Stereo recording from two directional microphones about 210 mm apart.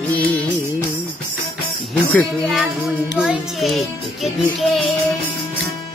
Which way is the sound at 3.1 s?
Centre (ahead or behind).